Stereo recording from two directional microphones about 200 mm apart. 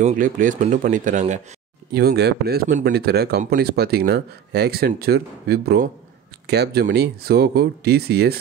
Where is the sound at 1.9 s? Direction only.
50° right (ahead or behind).